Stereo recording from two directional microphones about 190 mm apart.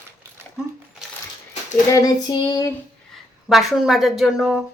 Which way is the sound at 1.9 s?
20° left (ahead or behind).